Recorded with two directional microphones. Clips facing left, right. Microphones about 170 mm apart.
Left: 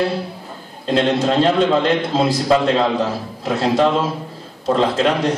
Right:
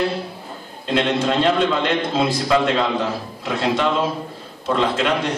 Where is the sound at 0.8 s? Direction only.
40° left (ahead or behind).